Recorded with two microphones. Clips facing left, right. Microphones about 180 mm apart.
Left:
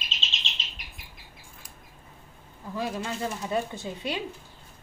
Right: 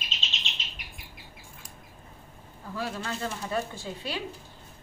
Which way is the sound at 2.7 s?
20° left (ahead or behind).